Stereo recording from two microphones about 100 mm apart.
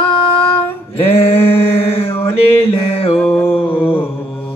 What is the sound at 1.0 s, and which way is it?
Mantra, 75° left (ahead or behind).